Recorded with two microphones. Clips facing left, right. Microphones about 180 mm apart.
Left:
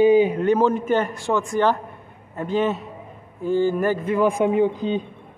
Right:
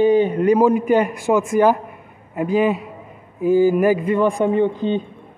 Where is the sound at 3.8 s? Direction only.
Centre (ahead or behind).